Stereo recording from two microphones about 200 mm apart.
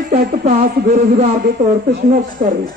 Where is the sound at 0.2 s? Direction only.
40° right (ahead or behind).